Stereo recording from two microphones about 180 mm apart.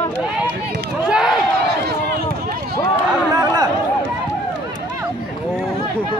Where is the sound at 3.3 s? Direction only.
20° right (ahead or behind).